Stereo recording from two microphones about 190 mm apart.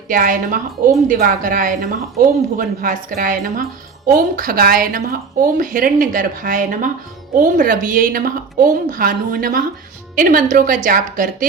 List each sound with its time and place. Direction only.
0.1 s a woman's voice: 45° right (ahead or behind)